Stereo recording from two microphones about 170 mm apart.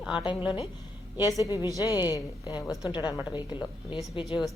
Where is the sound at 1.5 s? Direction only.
20° left (ahead or behind).